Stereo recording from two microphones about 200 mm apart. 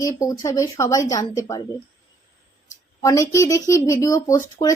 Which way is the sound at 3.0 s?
15° left (ahead or behind).